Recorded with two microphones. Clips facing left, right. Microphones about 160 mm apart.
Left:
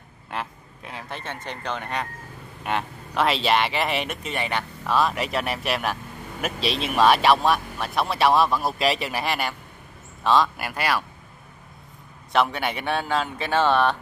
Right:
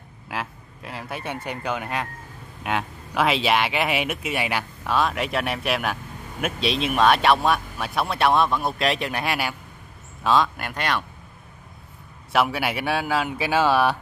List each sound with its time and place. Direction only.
0.3 s speech: centre (ahead or behind)
12.3 s speech: 5° right (ahead or behind)